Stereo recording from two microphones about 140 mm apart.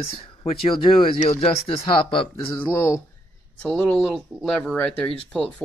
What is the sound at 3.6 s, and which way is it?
Speech, 10° left (ahead or behind).